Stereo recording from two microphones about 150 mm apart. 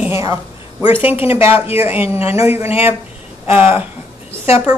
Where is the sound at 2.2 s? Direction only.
40° left (ahead or behind).